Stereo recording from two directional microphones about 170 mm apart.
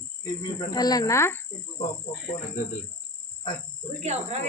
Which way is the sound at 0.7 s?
20° left (ahead or behind).